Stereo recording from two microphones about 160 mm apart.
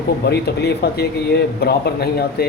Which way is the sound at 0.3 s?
90° left.